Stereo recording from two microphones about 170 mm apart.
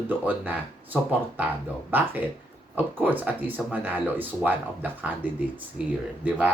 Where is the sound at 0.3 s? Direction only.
10° right (ahead or behind).